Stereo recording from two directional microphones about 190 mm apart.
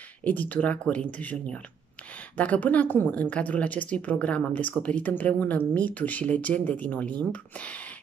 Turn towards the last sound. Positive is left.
turn(degrees=5)  # may be behind; listen again after turning